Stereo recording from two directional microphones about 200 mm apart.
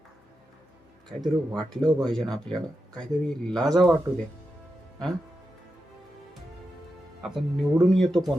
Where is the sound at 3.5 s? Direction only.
Centre (ahead or behind).